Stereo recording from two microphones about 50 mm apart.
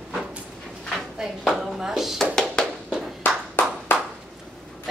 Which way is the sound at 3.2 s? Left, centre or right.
Left.